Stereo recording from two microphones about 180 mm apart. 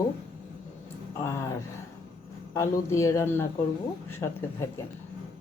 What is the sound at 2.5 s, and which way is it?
A woman's voice, 15° left (ahead or behind).